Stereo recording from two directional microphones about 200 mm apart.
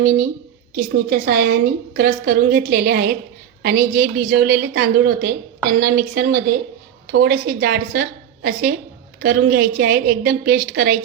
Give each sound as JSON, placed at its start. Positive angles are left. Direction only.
{"t": 0.0, "sound": "a woman's voice", "side_deg": -45}